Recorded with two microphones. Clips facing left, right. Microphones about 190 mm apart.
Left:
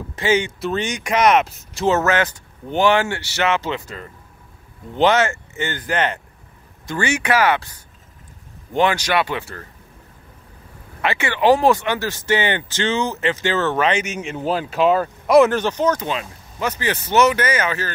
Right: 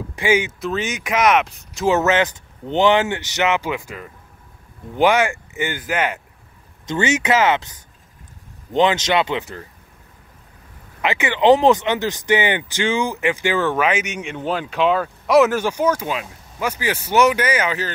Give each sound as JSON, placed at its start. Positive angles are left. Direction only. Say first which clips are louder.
{"t": 0.1, "sound": "speech", "louder": "even", "side_deg": -10}
{"t": 1.9, "sound": "speech", "louder": "right 1 dB", "side_deg": -20}
{"t": 6.9, "sound": "speech", "louder": "right 2 dB", "side_deg": -20}
{"t": 11.0, "sound": "speech", "louder": "right 1 dB", "side_deg": -15}
{"t": 14.4, "sound": "speech", "louder": "left 2 dB", "side_deg": 40}
{"t": 15.2, "sound": "speech", "louder": "left 1 dB", "side_deg": 0}